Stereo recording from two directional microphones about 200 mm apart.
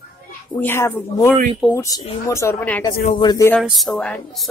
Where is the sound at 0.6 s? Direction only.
10° left (ahead or behind).